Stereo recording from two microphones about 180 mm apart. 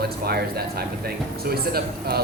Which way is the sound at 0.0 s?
60° right (ahead or behind).